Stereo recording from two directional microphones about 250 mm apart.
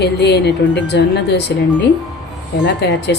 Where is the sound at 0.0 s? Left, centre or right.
Left.